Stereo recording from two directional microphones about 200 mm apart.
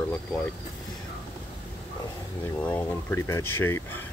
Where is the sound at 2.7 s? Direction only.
10° left (ahead or behind).